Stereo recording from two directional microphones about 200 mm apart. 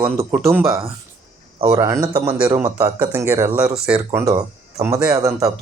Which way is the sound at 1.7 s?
15° right (ahead or behind).